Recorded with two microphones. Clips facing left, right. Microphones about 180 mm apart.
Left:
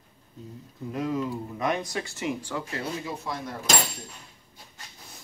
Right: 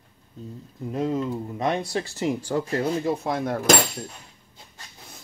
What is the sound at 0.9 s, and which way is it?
Speech, 25° right (ahead or behind).